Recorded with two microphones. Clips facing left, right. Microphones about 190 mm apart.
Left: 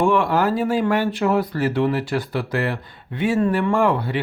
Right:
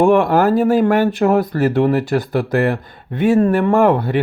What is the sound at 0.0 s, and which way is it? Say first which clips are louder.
Speech: right 6 dB; 45° right (ahead or behind).